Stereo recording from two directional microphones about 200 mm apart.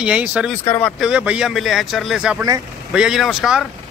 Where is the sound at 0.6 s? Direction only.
10° left (ahead or behind).